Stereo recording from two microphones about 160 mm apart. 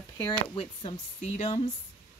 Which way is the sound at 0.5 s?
35° left (ahead or behind).